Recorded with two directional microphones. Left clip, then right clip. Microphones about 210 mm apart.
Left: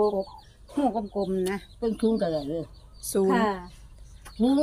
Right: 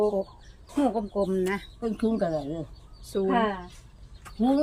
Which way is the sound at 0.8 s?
10° right (ahead or behind).